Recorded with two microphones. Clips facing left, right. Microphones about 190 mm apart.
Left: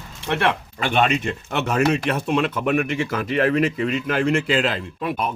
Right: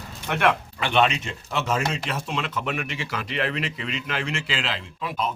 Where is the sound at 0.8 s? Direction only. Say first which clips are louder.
Left 2 dB; 45° left (ahead or behind).